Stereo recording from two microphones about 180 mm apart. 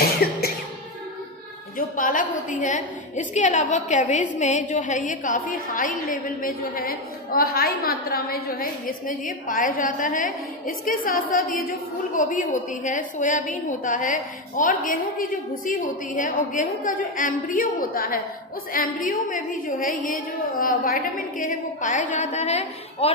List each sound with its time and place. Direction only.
0.2 s cough: 60° left (ahead or behind)
1.8 s a woman's voice: 50° left (ahead or behind)